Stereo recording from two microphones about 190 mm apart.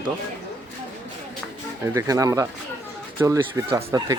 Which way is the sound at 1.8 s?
15° right (ahead or behind).